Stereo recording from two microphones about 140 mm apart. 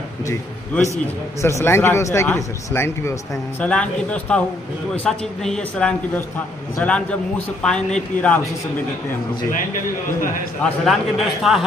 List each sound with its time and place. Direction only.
1.4 s speech: 20° left (ahead or behind)
10.6 s a man's voice: centre (ahead or behind)